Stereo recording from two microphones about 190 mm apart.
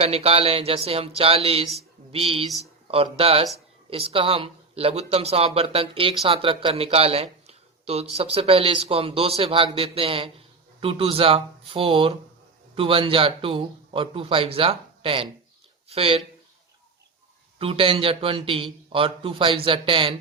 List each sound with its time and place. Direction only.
0.0 s speech: 30° right (ahead or behind)
17.6 s speech: 30° right (ahead or behind)